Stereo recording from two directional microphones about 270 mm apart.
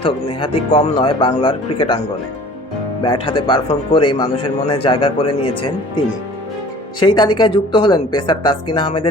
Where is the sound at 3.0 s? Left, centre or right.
Centre.